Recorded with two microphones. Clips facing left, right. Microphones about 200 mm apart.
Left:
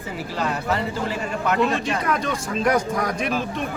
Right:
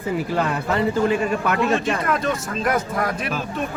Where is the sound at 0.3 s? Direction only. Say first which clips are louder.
Even; 55° right (ahead or behind).